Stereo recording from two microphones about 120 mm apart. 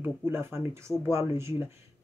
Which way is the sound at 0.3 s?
20° right (ahead or behind).